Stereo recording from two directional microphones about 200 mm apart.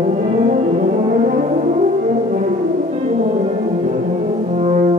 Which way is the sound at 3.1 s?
35° right (ahead or behind).